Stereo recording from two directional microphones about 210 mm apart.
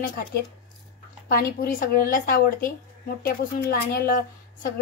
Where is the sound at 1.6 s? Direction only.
45° left (ahead or behind).